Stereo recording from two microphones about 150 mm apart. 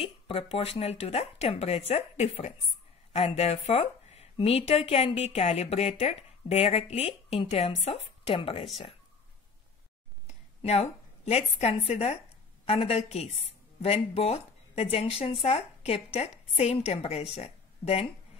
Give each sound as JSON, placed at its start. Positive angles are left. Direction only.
{"t": 0.0, "sound": "a woman's voice", "side_deg": 40}
{"t": 10.2, "sound": "a woman's voice", "side_deg": 45}